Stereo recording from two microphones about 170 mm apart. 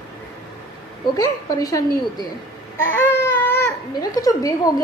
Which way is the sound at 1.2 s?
20° left (ahead or behind).